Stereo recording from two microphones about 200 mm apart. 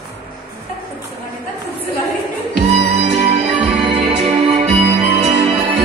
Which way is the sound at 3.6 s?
25° right (ahead or behind).